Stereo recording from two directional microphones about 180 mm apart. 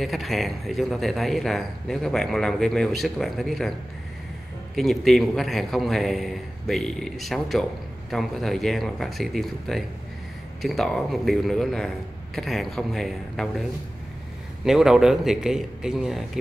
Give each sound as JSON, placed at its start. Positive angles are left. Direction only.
{"t": 0.0, "sound": "speech", "side_deg": 0}
{"t": 4.7, "sound": "speech", "side_deg": 0}